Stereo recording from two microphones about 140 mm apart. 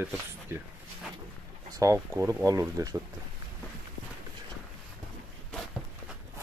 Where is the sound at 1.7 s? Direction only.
25° right (ahead or behind).